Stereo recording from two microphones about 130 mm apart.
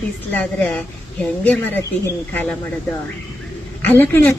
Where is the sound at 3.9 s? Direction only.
15° left (ahead or behind).